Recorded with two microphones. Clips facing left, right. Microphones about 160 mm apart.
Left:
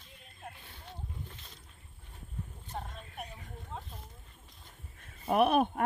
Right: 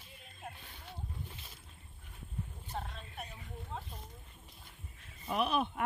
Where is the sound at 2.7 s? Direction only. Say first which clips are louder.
Even; 5° left (ahead or behind).